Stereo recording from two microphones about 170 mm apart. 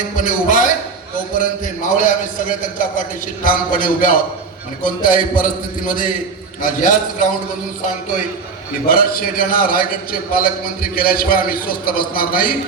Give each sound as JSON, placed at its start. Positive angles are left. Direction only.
{"t": 0.2, "sound": "a sound", "side_deg": 50}
{"t": 1.4, "sound": "a man's voice", "side_deg": 50}
{"t": 8.9, "sound": "a man's voice", "side_deg": 60}